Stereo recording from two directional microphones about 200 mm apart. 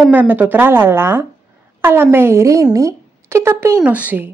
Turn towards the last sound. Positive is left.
turn(degrees=-10)  # may be behind; listen again after turning